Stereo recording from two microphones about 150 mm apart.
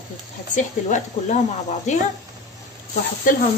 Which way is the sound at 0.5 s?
55° left (ahead or behind).